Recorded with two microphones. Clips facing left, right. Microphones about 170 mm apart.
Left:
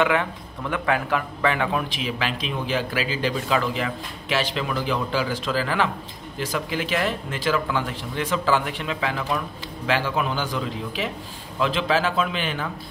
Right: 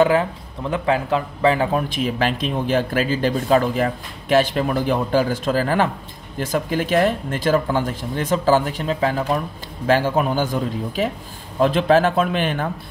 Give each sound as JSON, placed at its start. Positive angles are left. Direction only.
{"t": 0.0, "sound": "speech", "side_deg": -35}